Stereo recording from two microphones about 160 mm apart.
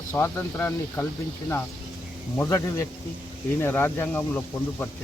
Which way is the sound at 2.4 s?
15° left (ahead or behind).